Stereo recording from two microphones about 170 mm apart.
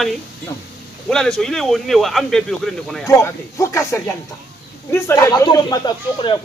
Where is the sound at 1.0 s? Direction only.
5° left (ahead or behind).